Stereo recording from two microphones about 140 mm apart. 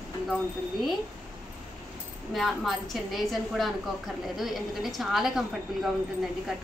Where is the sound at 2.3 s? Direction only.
Centre (ahead or behind).